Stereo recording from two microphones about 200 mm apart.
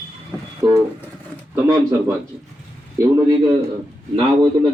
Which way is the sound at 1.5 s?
15° right (ahead or behind).